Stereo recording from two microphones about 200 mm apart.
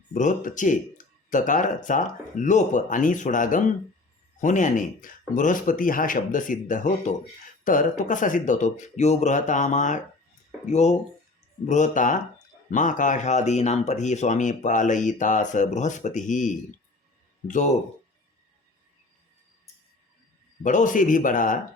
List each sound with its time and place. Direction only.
0.1 s speech: 40° left (ahead or behind)
20.7 s speech: 40° left (ahead or behind)